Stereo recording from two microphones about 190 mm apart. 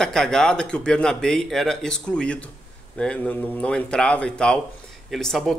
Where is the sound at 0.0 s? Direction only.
5° left (ahead or behind).